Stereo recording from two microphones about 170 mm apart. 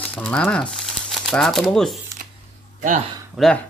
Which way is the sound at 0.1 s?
5° left (ahead or behind).